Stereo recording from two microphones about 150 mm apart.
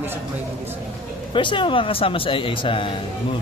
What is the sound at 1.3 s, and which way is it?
A man's voice, 35° left (ahead or behind).